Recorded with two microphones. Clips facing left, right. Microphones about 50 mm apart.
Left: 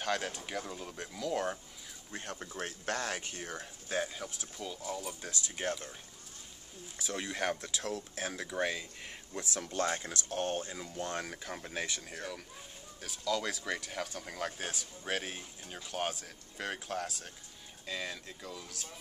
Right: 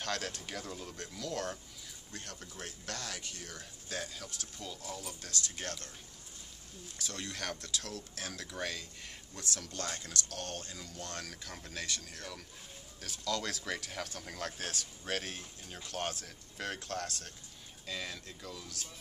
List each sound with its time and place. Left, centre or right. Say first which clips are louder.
0.0 s speech: left 3 dB; centre
2.1 s speech: left 6 dB; left
7.0 s speech: left 6 dB; centre